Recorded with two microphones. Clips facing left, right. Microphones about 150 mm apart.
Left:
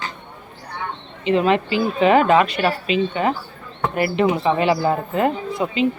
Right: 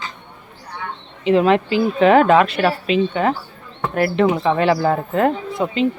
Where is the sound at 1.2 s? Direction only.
Centre (ahead or behind).